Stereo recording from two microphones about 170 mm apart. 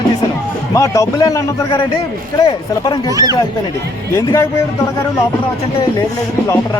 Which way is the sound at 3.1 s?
20° right (ahead or behind).